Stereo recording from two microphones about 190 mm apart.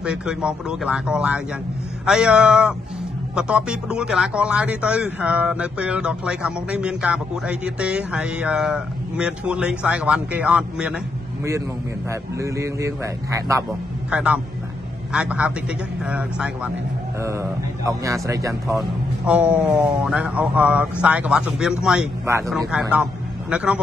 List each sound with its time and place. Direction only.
0.0 s a man's voice: 5° right (ahead or behind)
12.1 s a man's voice: 15° right (ahead or behind)
23.5 s a man's voice: 5° right (ahead or behind)